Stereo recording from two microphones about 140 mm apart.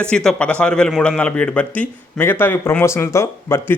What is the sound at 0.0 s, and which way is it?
A man's voice, 5° left (ahead or behind).